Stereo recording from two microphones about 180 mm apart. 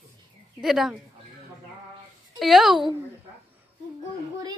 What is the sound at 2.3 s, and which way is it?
Speech, centre (ahead or behind).